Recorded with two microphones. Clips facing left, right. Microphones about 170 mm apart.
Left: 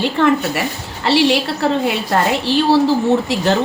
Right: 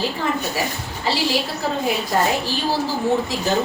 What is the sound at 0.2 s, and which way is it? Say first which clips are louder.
A woman's voice: left 8 dB; 75° left (ahead or behind).